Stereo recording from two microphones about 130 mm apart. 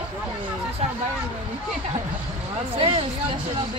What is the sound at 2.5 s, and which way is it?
Speech, 45° right (ahead or behind).